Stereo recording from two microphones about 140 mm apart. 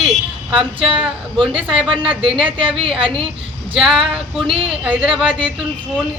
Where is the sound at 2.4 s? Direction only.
35° right (ahead or behind).